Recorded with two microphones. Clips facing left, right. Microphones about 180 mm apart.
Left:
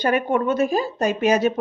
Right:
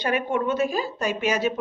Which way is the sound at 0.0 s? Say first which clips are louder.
Left 4 dB; 45° left (ahead or behind).